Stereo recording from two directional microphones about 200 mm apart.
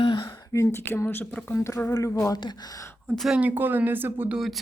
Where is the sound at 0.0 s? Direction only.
25° left (ahead or behind).